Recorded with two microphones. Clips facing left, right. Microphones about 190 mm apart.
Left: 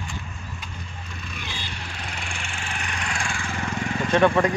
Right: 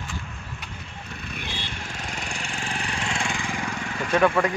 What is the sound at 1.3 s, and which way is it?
Vehicle, 55° right (ahead or behind).